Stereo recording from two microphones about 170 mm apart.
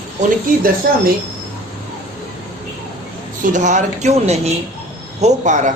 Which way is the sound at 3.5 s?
45° right (ahead or behind).